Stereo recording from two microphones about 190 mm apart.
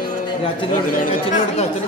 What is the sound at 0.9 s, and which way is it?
Speech, 35° left (ahead or behind).